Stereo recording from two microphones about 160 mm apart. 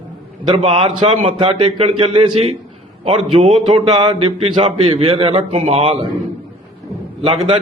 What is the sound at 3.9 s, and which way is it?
A man's voice, 30° right (ahead or behind).